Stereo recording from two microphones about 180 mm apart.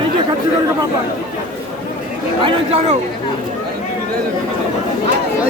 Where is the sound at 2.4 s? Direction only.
30° right (ahead or behind).